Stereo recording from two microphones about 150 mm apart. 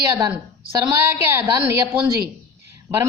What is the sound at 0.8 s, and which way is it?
A woman's voice, 15° right (ahead or behind).